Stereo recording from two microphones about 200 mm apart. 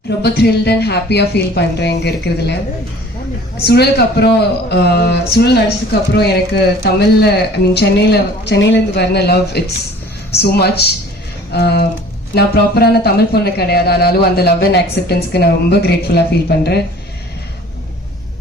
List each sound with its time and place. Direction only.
0.2 s speech: 55° left (ahead or behind)
3.6 s speech: 55° left (ahead or behind)